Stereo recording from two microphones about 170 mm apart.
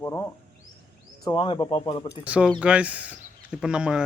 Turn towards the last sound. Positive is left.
turn(degrees=-5)  # may be behind; listen again after turning